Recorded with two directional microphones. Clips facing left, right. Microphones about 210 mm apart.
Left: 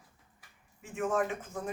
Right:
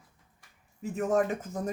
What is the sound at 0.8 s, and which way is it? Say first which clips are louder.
Speech: right 4 dB; 40° right (ahead or behind).